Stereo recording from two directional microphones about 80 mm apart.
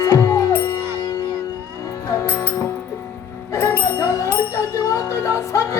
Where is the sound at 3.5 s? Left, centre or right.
Left.